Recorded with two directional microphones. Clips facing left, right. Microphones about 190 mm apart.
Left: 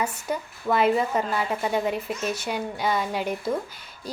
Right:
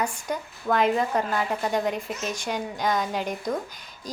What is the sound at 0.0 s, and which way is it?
A child's voice, 5° left (ahead or behind).